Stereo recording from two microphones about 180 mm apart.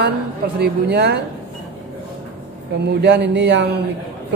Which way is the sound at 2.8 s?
65° right (ahead or behind).